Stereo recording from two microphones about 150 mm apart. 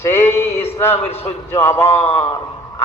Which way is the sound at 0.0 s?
15° left (ahead or behind).